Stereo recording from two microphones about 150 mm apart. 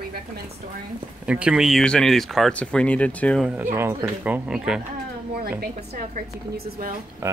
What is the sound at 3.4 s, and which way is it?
Speech, 15° right (ahead or behind).